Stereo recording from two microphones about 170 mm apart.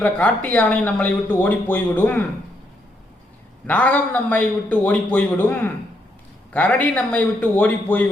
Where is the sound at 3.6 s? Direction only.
10° left (ahead or behind).